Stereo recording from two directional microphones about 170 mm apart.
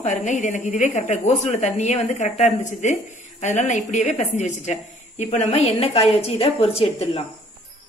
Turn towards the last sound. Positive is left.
turn(degrees=35)  # may be behind; listen again after turning